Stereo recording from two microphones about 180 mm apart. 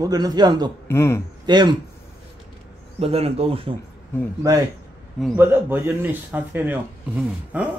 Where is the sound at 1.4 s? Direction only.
25° right (ahead or behind).